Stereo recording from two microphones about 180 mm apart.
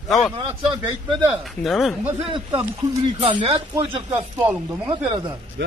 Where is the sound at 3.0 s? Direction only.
30° right (ahead or behind).